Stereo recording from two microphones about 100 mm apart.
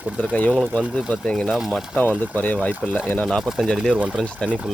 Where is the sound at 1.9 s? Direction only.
15° left (ahead or behind).